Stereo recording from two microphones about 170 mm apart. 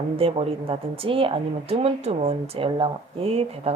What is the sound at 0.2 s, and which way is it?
Speech, 35° right (ahead or behind).